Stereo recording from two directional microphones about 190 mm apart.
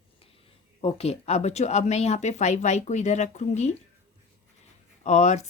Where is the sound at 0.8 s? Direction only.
35° left (ahead or behind).